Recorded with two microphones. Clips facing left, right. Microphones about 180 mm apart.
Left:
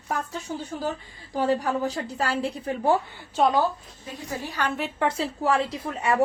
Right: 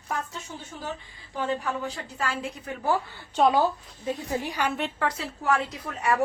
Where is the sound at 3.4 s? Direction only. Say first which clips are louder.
Even; centre (ahead or behind).